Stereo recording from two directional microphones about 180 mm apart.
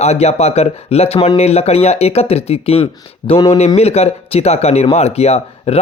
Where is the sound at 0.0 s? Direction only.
35° left (ahead or behind).